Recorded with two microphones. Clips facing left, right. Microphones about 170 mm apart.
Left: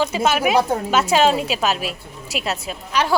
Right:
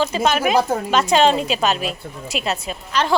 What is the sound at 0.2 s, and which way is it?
A woman's voice, 5° left (ahead or behind).